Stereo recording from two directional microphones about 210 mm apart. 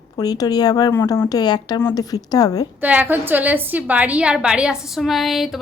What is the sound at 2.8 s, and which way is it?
A woman's voice, 10° right (ahead or behind).